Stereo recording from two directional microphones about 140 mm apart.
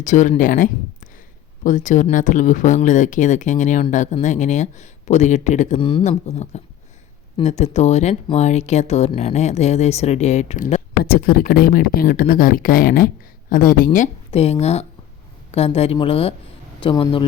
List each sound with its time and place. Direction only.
0.0 s speech: 60° left (ahead or behind)
11.0 s speech: 90° left
13.5 s speech: 80° left
14.3 s speech: 45° left (ahead or behind)